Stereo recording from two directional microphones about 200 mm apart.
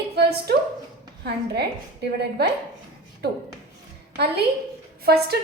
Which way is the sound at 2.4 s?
55° right (ahead or behind).